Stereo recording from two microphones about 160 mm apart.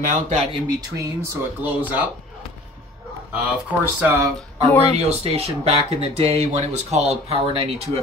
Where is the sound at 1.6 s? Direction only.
10° right (ahead or behind).